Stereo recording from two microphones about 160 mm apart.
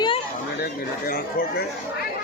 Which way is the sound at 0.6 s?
65° left (ahead or behind).